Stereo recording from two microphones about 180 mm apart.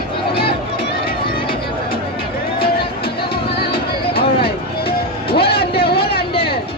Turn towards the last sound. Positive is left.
turn(degrees=60)  # may be behind; listen again after turning